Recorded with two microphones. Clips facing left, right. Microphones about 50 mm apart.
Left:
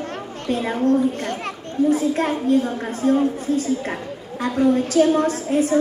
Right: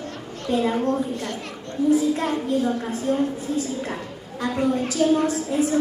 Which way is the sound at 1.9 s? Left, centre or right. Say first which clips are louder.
Right 2 dB; left.